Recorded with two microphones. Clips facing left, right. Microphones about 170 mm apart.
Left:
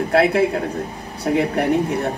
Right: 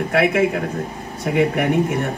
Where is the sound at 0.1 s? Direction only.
35° left (ahead or behind).